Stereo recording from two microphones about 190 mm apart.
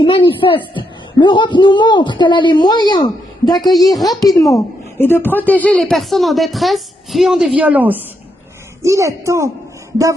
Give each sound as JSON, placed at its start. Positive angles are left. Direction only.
{"t": 0.0, "sound": "a man's voice", "side_deg": 25}
{"t": 3.9, "sound": "a woman's voice", "side_deg": 0}
{"t": 4.4, "sound": "a woman's voice", "side_deg": 15}